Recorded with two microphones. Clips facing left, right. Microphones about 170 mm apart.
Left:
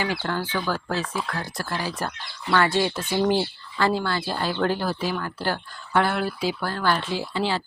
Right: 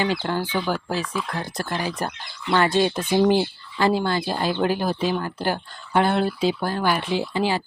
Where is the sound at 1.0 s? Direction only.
30° left (ahead or behind).